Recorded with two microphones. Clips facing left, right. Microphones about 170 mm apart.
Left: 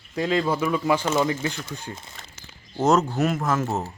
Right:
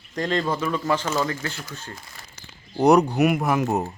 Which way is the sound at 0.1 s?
5° left (ahead or behind).